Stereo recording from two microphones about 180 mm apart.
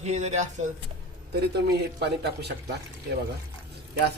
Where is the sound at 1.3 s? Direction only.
65° right (ahead or behind).